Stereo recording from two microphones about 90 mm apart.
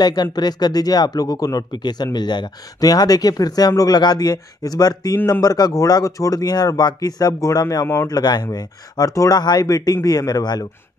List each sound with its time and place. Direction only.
0.0 s speech: 50° left (ahead or behind)
7.8 s speech: 30° left (ahead or behind)
8.1 s speech: 50° left (ahead or behind)